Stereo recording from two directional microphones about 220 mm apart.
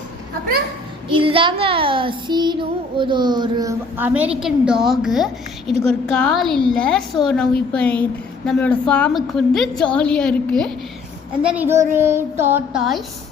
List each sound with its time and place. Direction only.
1.1 s child singing: 25° right (ahead or behind); by 5.7 s centre (ahead or behind)
5.8 s a woman's voice: 5° left (ahead or behind)
11.4 s child singing: 10° right (ahead or behind)